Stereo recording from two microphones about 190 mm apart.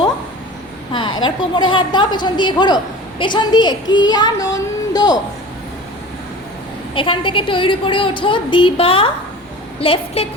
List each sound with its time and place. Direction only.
1.2 s a woman's voice: 25° left (ahead or behind)
6.9 s a woman's voice: 25° left (ahead or behind)